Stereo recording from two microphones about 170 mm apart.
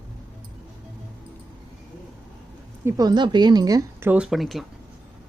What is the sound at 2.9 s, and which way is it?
Speech, 25° right (ahead or behind).